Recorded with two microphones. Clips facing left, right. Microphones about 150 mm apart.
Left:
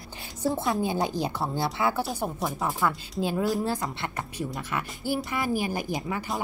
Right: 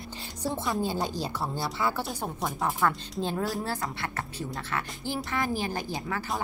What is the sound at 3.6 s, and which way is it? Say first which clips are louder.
A woman's voice: left 3 dB; 20° left (ahead or behind).